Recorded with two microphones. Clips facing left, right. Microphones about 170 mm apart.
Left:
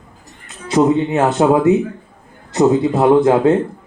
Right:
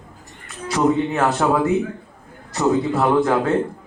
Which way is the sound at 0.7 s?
20° left (ahead or behind).